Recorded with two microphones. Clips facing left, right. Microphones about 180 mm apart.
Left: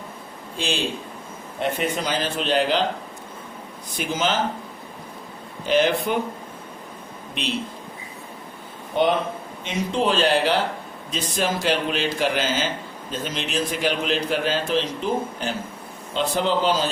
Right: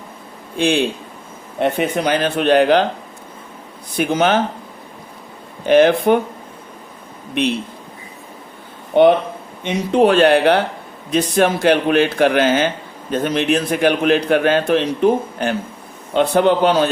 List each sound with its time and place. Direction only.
0.5 s speech: 60° right (ahead or behind)
3.9 s speech: 60° right (ahead or behind)
5.6 s speech: 60° right (ahead or behind)
8.9 s speech: 60° right (ahead or behind)